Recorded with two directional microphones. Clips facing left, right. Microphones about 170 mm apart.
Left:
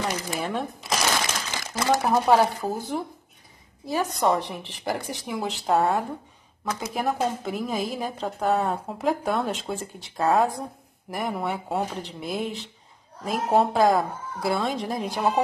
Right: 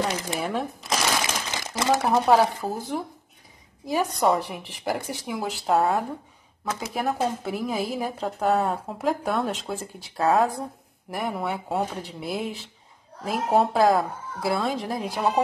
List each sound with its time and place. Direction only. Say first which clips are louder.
0.4 s a woman's voice: right 1 dB; centre (ahead or behind)
0.8 s a sound: left 1 dB; centre (ahead or behind)
1.5 s crumpling: even; 20° right (ahead or behind)
2.0 s a woman's voice: even; centre (ahead or behind)
3.8 s a woman's voice: right 1 dB; 10° right (ahead or behind)